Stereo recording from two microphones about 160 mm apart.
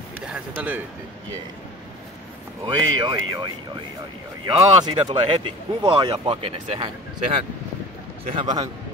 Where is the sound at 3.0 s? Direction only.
25° right (ahead or behind).